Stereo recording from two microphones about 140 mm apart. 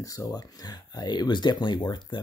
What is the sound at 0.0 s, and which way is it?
Speech, 25° left (ahead or behind).